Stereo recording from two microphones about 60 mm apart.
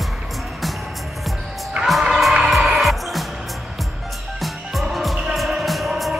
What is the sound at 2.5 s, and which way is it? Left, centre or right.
Music, centre.